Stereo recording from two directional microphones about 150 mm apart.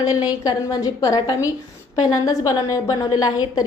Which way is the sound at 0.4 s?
25° left (ahead or behind).